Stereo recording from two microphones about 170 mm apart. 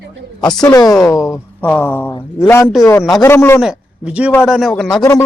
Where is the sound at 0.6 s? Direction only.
20° left (ahead or behind).